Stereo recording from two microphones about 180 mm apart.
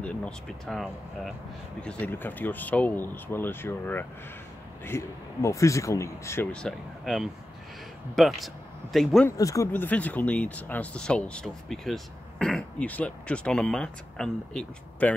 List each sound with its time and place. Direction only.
0.0 s speech: 5° left (ahead or behind)
9.4 s speech: 15° left (ahead or behind)